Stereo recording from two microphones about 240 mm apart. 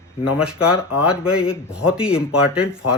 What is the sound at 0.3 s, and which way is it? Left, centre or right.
Speech, centre.